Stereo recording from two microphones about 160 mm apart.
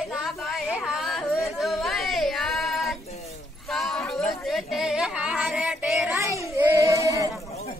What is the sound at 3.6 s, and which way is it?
Speech, centre (ahead or behind).